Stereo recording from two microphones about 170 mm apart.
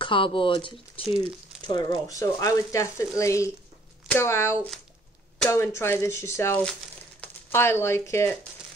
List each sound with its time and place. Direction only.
0.0 s speech: 30° left (ahead or behind)